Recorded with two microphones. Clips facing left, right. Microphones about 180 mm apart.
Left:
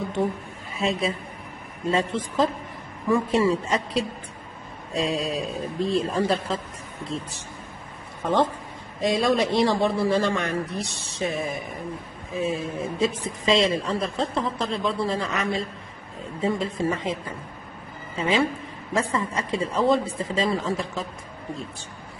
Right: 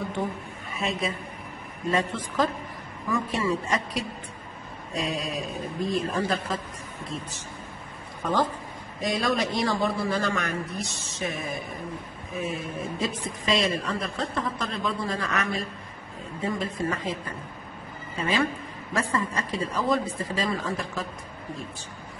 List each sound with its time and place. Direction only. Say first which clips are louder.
0.7 s a woman's voice: left 4 dB; 30° left (ahead or behind)
9.0 s a woman's voice: left 5 dB; 25° left (ahead or behind)